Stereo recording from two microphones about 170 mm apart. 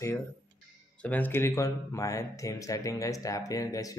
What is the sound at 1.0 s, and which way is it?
Speech, 10° left (ahead or behind).